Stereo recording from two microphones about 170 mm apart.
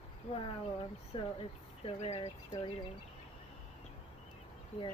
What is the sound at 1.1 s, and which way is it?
Speech, 35° left (ahead or behind).